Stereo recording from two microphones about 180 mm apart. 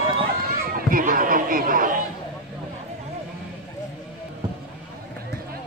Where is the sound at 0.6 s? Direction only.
50° right (ahead or behind).